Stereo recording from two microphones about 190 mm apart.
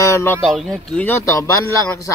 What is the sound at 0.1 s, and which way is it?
Speech, 15° left (ahead or behind).